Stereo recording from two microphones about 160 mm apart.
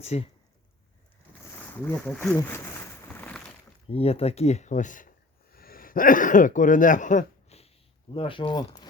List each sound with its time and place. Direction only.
0.0 s speech: 40° left (ahead or behind)
1.8 s a sound: 10° left (ahead or behind)
3.8 s speech: 40° left (ahead or behind)